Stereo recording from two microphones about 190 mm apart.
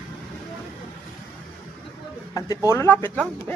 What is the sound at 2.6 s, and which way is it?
Speech, 15° left (ahead or behind).